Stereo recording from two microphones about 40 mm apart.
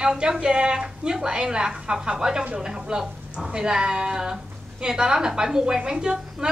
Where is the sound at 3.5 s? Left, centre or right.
Centre.